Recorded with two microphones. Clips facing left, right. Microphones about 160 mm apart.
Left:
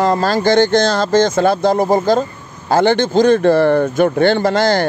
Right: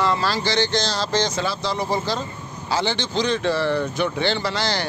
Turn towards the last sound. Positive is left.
turn(degrees=50)  # may be behind; listen again after turning